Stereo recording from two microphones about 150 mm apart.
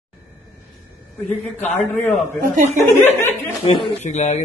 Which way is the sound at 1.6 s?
15° left (ahead or behind).